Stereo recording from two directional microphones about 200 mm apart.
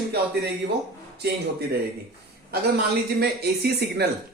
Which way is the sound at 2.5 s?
50° right (ahead or behind).